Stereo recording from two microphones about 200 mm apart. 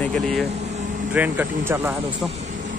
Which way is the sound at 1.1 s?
10° right (ahead or behind).